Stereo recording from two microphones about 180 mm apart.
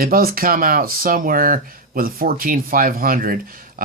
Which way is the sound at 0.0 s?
55° right (ahead or behind).